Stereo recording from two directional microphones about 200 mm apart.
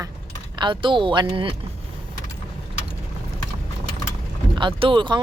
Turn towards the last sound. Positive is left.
turn(degrees=-25)  # may be behind; listen again after turning